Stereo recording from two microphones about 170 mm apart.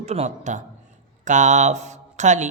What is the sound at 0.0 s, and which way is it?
A man's voice, 40° right (ahead or behind).